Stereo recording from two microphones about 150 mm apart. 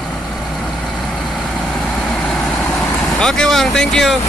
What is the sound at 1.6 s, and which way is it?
Vehicle, 5° left (ahead or behind).